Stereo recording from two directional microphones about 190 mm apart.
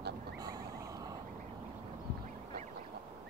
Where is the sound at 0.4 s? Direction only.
20° right (ahead or behind).